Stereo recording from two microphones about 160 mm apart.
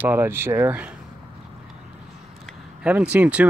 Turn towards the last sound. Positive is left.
turn(degrees=-10)  # may be behind; listen again after turning